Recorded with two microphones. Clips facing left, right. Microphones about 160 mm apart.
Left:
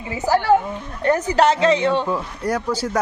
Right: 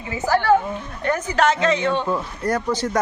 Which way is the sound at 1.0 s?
35° left (ahead or behind).